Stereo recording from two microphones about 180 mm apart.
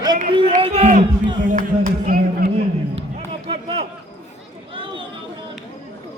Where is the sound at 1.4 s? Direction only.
45° right (ahead or behind).